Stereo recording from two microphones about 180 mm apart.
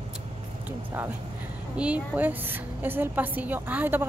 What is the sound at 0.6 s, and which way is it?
A woman's voice, 10° right (ahead or behind).